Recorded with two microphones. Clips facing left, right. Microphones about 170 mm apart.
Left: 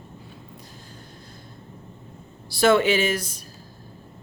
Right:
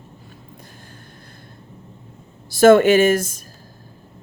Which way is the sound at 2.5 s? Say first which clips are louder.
Right 7 dB; 45° right (ahead or behind).